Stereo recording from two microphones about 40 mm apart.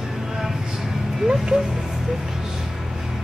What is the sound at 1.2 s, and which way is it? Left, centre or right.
Music, centre.